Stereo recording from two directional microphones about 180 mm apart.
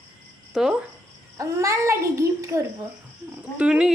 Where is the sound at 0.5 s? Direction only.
5° right (ahead or behind).